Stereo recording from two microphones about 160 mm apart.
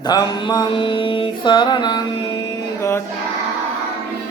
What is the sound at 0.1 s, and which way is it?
Music, 25° left (ahead or behind).